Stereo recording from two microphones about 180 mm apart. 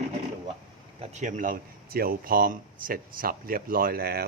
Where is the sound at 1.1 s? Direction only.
45° right (ahead or behind).